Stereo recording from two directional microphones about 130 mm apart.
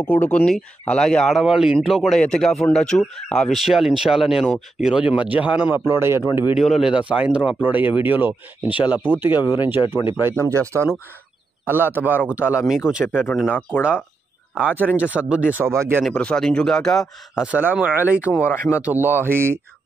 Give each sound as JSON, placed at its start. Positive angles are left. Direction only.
{"t": 0.0, "sound": "speech", "side_deg": 15}
{"t": 6.5, "sound": "speech", "side_deg": 0}
{"t": 13.5, "sound": "speech", "side_deg": 10}
{"t": 14.6, "sound": "speech", "side_deg": -10}
{"t": 16.0, "sound": "speech", "side_deg": 10}
{"t": 17.5, "sound": "speech", "side_deg": -10}
{"t": 18.3, "sound": "speech", "side_deg": 20}
{"t": 18.9, "sound": "speech", "side_deg": -15}